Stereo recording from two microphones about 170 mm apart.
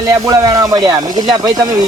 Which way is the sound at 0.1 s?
20° right (ahead or behind).